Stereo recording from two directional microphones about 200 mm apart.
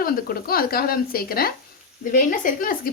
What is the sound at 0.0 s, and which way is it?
Speech, 45° left (ahead or behind).